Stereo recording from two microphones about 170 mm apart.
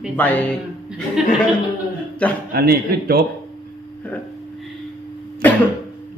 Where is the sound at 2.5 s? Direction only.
65° right (ahead or behind).